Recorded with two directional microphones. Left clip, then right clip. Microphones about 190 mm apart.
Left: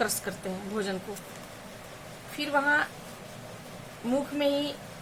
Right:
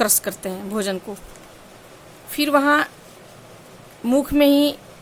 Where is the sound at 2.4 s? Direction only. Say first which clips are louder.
Right 9 dB; 60° right (ahead or behind).